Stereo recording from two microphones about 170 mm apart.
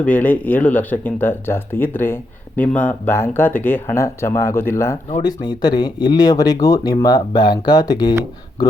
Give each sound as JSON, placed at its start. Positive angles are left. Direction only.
{"t": 0.0, "sound": "speech", "side_deg": 10}